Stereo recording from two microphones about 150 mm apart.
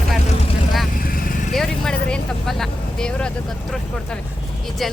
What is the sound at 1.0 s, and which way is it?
Vehicle, 70° left (ahead or behind).